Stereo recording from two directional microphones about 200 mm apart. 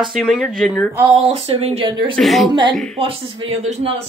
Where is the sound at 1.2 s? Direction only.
30° right (ahead or behind).